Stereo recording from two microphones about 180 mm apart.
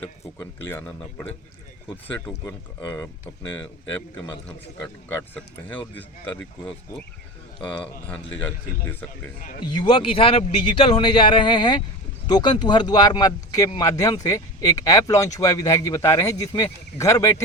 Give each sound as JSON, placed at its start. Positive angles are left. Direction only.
{"t": 0.3, "sound": "speech", "side_deg": 10}
{"t": 5.3, "sound": "speech", "side_deg": 10}
{"t": 8.4, "sound": "speech", "side_deg": 10}
{"t": 9.4, "sound": "speech", "side_deg": 45}
{"t": 9.7, "sound": "speech", "side_deg": 30}